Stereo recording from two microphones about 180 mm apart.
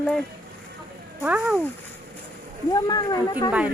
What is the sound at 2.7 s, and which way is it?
Speech, 20° left (ahead or behind).